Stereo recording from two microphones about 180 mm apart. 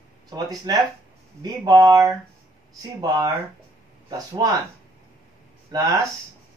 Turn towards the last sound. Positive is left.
turn(degrees=-20)  # may be behind; listen again after turning